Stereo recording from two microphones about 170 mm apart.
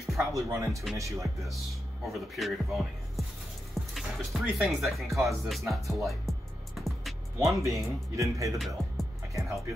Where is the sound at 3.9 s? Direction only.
Centre (ahead or behind).